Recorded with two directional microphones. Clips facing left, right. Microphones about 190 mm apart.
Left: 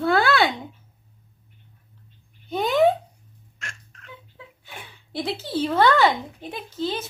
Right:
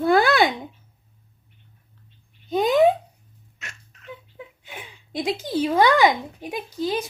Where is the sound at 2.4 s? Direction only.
20° right (ahead or behind).